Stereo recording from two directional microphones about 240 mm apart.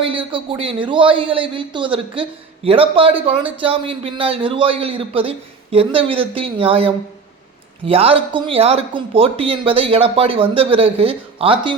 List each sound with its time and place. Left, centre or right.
0.0 s speech: right